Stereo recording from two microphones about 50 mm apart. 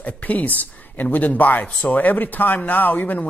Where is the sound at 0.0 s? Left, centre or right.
Left.